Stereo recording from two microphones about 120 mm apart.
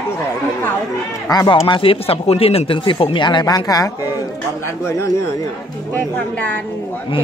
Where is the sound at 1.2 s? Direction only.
35° left (ahead or behind).